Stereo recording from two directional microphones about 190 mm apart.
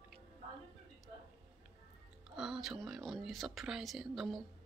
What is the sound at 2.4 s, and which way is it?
Speech, centre (ahead or behind).